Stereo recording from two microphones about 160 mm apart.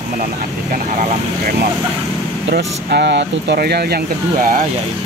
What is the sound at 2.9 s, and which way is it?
Speech, 90° right.